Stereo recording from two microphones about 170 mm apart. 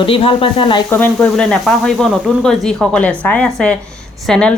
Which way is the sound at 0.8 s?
10° left (ahead or behind).